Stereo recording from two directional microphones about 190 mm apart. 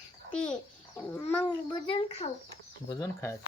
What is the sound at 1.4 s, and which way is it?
Speech, 25° left (ahead or behind).